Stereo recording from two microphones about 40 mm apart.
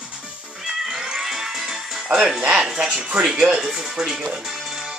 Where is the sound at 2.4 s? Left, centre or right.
Right.